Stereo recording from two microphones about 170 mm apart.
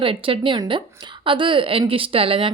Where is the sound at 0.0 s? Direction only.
30° right (ahead or behind).